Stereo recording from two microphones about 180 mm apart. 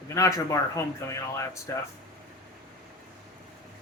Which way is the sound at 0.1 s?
15° left (ahead or behind).